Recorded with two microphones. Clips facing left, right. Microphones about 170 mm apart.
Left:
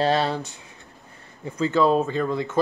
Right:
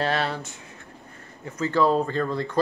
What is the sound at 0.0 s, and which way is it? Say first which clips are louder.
Speech: left 4 dB; 30° left (ahead or behind).